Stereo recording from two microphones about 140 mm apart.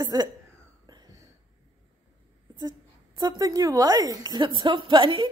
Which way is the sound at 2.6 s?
30° right (ahead or behind).